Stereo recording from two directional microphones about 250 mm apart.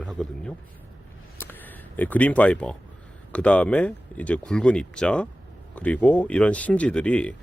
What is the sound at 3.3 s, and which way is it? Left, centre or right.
Speech, centre.